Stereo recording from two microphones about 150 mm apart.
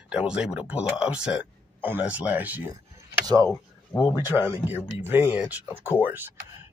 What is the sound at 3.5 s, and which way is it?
Speech, 25° left (ahead or behind).